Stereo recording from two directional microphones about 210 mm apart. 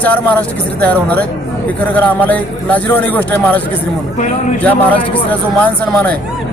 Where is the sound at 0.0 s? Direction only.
10° left (ahead or behind).